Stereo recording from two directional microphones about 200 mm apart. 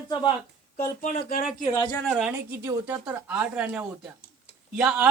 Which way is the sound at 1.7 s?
20° left (ahead or behind).